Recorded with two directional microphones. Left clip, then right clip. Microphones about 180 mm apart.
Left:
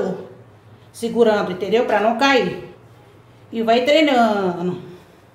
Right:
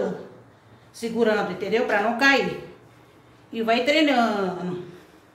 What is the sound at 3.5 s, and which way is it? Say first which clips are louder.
Speech: left 6 dB; 20° left (ahead or behind).